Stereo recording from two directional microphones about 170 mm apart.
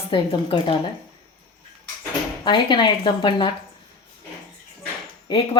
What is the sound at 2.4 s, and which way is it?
Speech, 30° left (ahead or behind).